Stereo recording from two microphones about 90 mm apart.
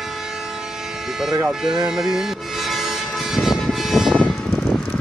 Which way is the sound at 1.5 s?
5° right (ahead or behind).